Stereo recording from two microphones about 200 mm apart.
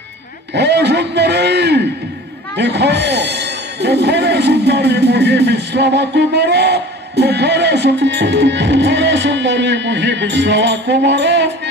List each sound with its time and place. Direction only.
0.6 s speech: 60° right (ahead or behind)